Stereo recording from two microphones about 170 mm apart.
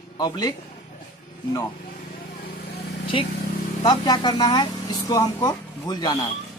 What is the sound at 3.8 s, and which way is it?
Speech, 25° left (ahead or behind).